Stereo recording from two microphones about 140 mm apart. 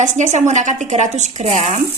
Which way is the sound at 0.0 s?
60° right (ahead or behind).